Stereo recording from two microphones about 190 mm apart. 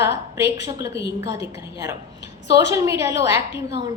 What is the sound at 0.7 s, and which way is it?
A woman's voice, 15° right (ahead or behind).